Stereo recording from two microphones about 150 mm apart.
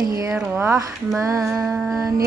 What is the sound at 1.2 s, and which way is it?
Hands, 20° right (ahead or behind).